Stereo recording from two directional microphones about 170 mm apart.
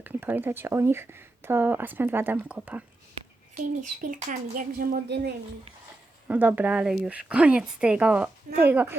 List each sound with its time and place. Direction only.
0.0 s speech: 10° right (ahead or behind)
3.5 s speech: 50° right (ahead or behind); by 5.3 s 80° right
6.2 s speech: 10° right (ahead or behind)